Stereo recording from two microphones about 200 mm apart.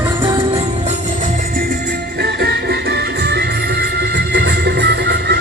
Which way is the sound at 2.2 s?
50° right (ahead or behind).